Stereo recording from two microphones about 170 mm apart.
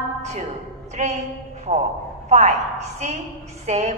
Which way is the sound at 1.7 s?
45° right (ahead or behind).